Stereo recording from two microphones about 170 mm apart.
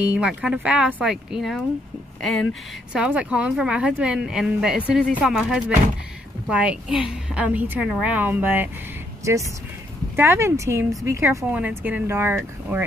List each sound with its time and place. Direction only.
0.0 s speech: 5° right (ahead or behind)
2.9 s a woman's voice: 5° right (ahead or behind)